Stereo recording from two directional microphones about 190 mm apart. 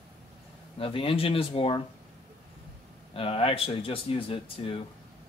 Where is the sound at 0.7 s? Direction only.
30° left (ahead or behind).